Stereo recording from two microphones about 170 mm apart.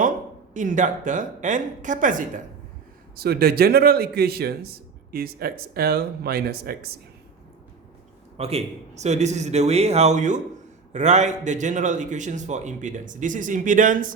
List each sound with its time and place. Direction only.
0.5 s a man's voice: 50° right (ahead or behind)
3.2 s a man's voice: 65° right (ahead or behind)
8.4 s a man's voice: 35° right (ahead or behind)